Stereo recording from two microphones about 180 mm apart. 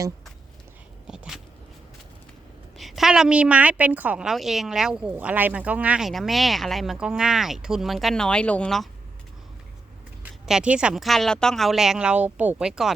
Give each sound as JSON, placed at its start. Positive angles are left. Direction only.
{"t": 1.0, "sound": "a woman's voice", "side_deg": -5}
{"t": 2.7, "sound": "a woman's voice", "side_deg": 0}
{"t": 10.4, "sound": "a woman's voice", "side_deg": -5}